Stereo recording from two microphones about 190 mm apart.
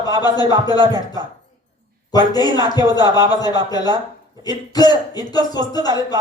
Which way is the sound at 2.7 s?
20° left (ahead or behind).